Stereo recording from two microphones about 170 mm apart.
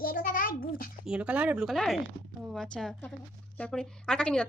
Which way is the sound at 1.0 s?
5° right (ahead or behind).